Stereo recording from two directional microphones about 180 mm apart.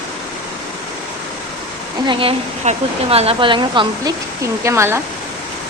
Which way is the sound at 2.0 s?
30° right (ahead or behind).